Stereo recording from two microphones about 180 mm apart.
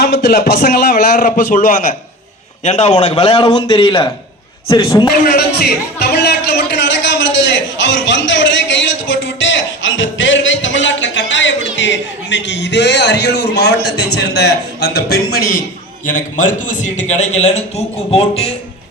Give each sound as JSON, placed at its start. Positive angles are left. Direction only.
{"t": 0.0, "sound": "a man's voice", "side_deg": 60}
{"t": 2.6, "sound": "a man's voice", "side_deg": 35}
{"t": 5.2, "sound": "a sound", "side_deg": 60}
{"t": 13.8, "sound": "a man's voice", "side_deg": 65}